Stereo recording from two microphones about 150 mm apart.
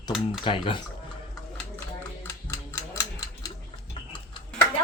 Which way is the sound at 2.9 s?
25° left (ahead or behind).